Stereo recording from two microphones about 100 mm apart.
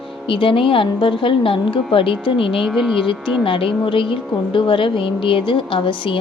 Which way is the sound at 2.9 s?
60° left (ahead or behind).